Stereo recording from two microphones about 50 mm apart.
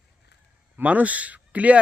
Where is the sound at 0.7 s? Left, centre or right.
Right.